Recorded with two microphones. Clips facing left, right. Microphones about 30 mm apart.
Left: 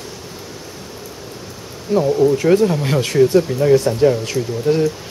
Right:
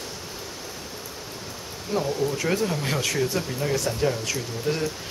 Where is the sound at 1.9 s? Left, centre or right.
Centre.